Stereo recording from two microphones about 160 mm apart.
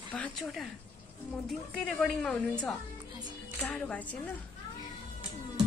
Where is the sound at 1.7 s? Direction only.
5° left (ahead or behind).